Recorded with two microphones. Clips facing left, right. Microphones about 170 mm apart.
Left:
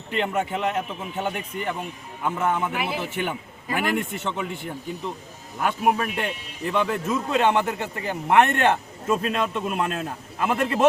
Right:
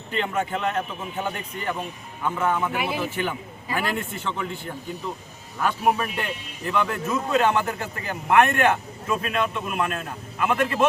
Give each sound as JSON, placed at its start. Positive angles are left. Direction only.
{"t": 0.1, "sound": "a man's voice", "side_deg": 15}
{"t": 5.5, "sound": "a man's voice", "side_deg": 15}